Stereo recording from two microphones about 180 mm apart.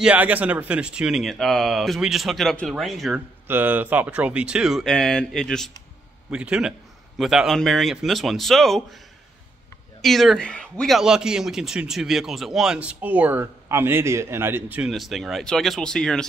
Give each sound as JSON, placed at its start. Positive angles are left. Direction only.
{"t": 0.0, "sound": "a man's voice", "side_deg": -10}
{"t": 3.4, "sound": "a man's voice", "side_deg": -10}
{"t": 10.0, "sound": "a man's voice", "side_deg": 0}